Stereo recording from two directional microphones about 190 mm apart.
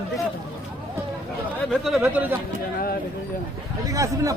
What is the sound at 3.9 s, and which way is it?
Speech, 15° right (ahead or behind).